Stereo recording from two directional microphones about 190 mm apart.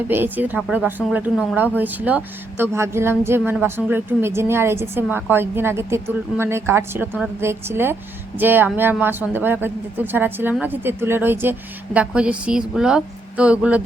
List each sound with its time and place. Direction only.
0.1 s a woman's voice: 10° right (ahead or behind)